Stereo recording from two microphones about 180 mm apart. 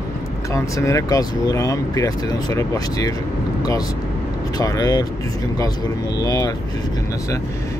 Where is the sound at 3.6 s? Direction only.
20° left (ahead or behind).